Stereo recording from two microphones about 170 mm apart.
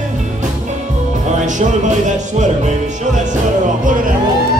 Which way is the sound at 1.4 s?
45° right (ahead or behind).